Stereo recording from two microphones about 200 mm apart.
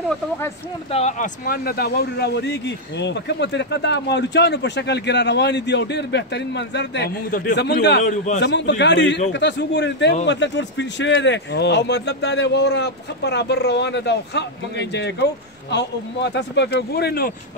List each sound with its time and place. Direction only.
0.9 s speech: 35° left (ahead or behind)